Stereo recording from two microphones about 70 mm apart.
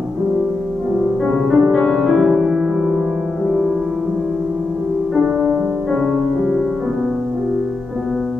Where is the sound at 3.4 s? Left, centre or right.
Centre.